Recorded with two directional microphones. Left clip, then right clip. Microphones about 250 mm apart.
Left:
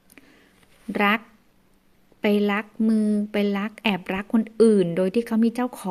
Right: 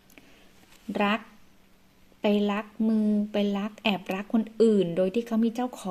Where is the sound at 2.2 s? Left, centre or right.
Left.